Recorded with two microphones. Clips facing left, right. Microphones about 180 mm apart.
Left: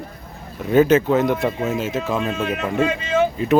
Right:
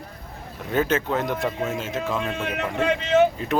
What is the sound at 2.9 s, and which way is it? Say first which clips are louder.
Speech: right 5 dB; 65° right (ahead or behind).